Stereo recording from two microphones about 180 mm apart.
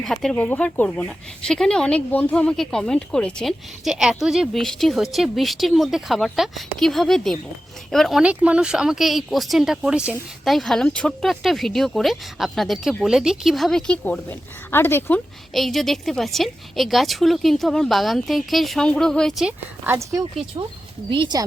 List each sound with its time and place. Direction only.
0.0 s speech: centre (ahead or behind)
15.5 s speech: centre (ahead or behind)
21.1 s speech: 25° right (ahead or behind)